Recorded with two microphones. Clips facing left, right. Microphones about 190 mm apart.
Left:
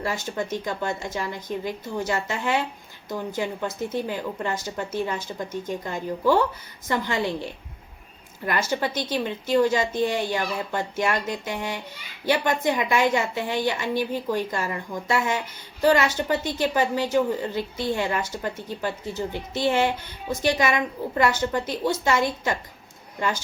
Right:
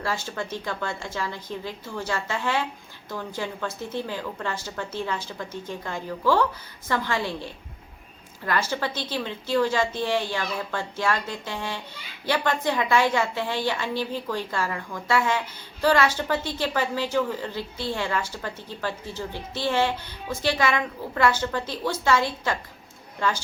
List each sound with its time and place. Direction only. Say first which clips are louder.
0.0 s a woman's voice: left 2 dB; 15° left (ahead or behind)
8.4 s a woman's voice: left 1 dB; 15° left (ahead or behind)